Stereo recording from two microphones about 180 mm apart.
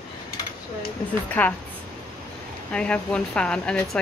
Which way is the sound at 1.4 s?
10° left (ahead or behind).